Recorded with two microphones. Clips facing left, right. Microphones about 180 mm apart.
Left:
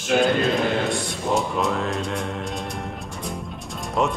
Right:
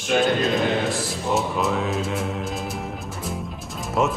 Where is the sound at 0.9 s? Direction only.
Centre (ahead or behind).